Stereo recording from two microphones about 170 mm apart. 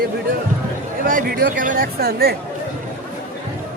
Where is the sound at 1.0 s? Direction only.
55° right (ahead or behind).